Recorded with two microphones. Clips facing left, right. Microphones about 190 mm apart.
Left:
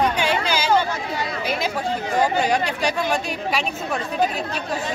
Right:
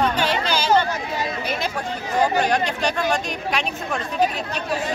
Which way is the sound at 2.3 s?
10° left (ahead or behind).